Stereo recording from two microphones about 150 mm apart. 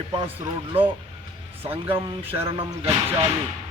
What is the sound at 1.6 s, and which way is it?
Speech, 40° right (ahead or behind).